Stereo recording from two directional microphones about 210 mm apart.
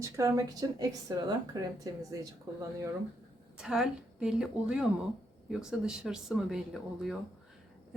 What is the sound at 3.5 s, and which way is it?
Speech, centre (ahead or behind).